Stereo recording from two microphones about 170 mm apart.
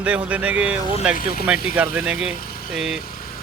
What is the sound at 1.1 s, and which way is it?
Speech, 60° left (ahead or behind).